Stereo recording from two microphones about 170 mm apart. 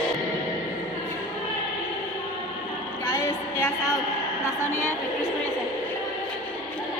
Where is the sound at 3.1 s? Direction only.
15° left (ahead or behind).